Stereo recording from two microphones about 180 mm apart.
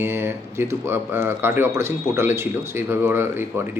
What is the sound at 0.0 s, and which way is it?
Speech, 15° right (ahead or behind).